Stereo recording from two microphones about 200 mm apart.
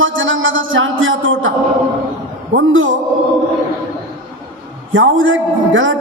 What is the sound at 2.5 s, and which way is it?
Speech, 75° right (ahead or behind).